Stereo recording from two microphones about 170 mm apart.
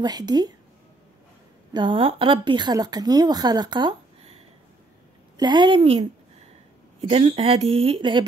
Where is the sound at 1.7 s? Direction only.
30° right (ahead or behind).